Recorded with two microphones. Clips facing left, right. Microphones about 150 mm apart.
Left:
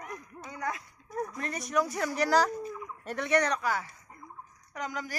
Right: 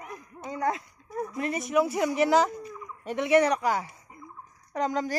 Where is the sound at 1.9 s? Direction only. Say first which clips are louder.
Right 3 dB; 15° right (ahead or behind).